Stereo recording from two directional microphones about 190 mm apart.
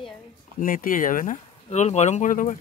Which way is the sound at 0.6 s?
45° left (ahead or behind).